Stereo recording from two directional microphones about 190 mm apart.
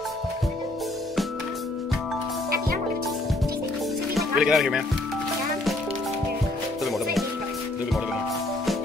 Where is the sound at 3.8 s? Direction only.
Centre (ahead or behind).